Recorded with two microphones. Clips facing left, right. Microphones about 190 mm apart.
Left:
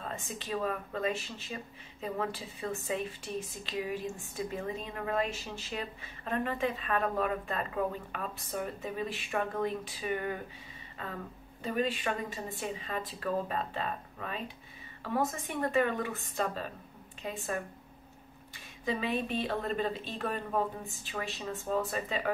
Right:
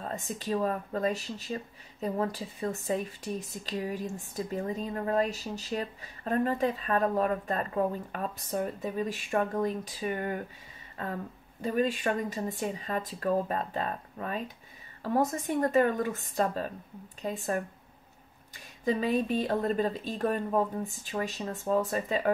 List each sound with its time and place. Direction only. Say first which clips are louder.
0.0 s speech: right 4 dB; 40° right (ahead or behind)
11.6 s a woman's voice: right 4 dB; 45° right (ahead or behind)
18.9 s a woman's voice: right 5 dB; 40° right (ahead or behind)